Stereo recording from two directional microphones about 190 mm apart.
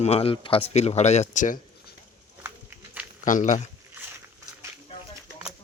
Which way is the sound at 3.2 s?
40° left (ahead or behind).